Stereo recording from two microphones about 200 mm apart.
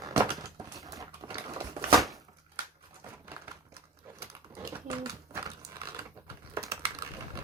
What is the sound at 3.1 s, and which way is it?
Typewriter, 10° right (ahead or behind).